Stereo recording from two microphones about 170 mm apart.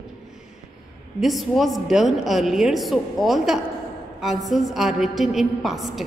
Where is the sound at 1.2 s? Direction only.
Centre (ahead or behind).